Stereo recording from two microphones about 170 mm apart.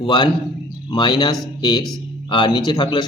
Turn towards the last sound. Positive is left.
turn(degrees=25)  # may be behind; listen again after turning